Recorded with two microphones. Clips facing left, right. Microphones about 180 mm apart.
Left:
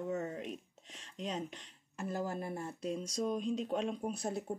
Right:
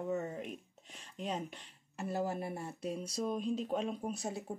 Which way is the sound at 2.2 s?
5° right (ahead or behind).